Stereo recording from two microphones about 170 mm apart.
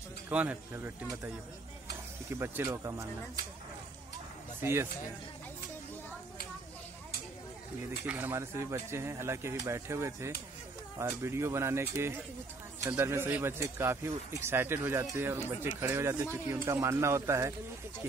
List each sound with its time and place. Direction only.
0.3 s speech: 10° right (ahead or behind)
2.3 s speech: 15° right (ahead or behind)
4.6 s speech: 15° right (ahead or behind)
8.1 s speech: 10° right (ahead or behind)